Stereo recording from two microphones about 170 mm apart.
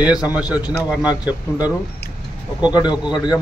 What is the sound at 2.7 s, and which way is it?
Speech, 25° left (ahead or behind).